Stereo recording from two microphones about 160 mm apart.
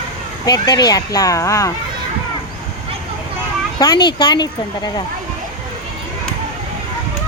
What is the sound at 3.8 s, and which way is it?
Speech, 25° left (ahead or behind).